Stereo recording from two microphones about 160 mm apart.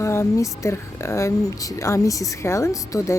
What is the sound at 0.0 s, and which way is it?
Speech, 15° left (ahead or behind).